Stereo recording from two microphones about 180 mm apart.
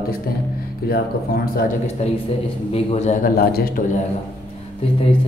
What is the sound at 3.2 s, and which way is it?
Speech, 55° left (ahead or behind).